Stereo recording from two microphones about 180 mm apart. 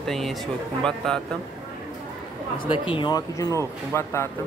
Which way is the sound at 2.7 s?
30° left (ahead or behind).